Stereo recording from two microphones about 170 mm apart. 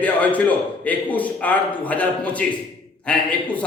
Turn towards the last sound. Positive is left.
turn(degrees=5)  # may be behind; listen again after turning